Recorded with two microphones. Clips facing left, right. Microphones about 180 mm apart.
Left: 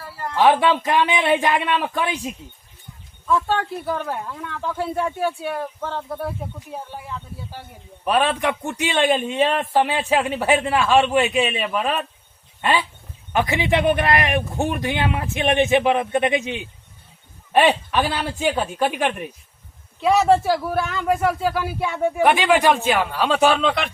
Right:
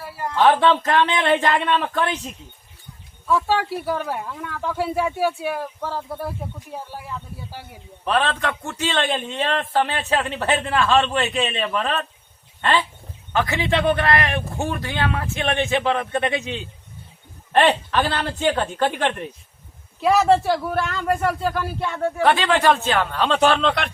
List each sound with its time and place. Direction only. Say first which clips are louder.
0.0 s a sound: right 2 dB; 15° right (ahead or behind)
0.3 s a man's voice: even; 10° left (ahead or behind)
3.2 s speech: right 1 dB; 5° right (ahead or behind)
8.0 s a man's voice: left 2 dB; 10° left (ahead or behind)
20.0 s speech: even; centre (ahead or behind)